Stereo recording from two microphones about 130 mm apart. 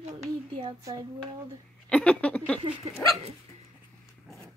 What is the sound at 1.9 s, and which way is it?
Speech, 10° left (ahead or behind).